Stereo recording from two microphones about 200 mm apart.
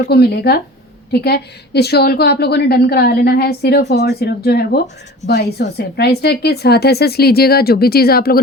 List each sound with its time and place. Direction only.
0.1 s a woman's voice: 50° left (ahead or behind)